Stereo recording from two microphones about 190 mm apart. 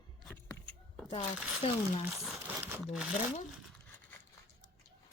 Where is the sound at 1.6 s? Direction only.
30° left (ahead or behind).